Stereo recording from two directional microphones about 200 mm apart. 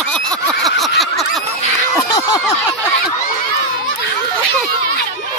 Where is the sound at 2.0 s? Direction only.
20° left (ahead or behind).